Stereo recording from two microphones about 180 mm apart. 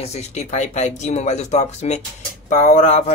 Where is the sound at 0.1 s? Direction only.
40° left (ahead or behind).